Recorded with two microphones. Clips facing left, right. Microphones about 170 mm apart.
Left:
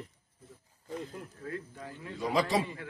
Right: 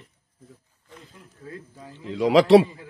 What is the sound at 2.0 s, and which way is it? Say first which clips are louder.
Speech: right 12 dB; 85° right.